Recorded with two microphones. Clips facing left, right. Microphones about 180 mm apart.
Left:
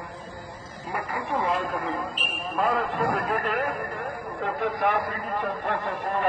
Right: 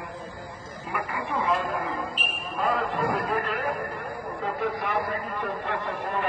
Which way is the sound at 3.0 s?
50° left (ahead or behind).